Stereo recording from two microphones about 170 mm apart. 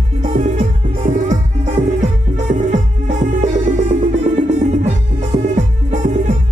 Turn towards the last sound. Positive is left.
turn(degrees=-45)  # may be behind; listen again after turning